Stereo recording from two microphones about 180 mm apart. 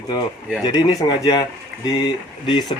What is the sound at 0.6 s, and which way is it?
Speech, 20° left (ahead or behind).